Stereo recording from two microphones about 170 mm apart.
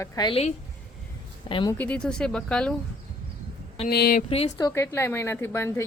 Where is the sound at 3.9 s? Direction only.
65° left (ahead or behind).